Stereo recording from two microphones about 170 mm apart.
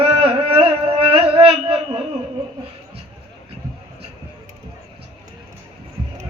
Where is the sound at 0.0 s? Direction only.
35° right (ahead or behind).